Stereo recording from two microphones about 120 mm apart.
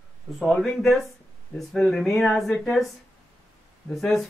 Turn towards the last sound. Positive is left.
turn(degrees=0)  # may be behind; listen again after turning